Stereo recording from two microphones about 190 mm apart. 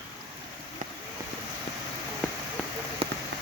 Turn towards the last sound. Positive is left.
turn(degrees=-30)  # may be behind; listen again after turning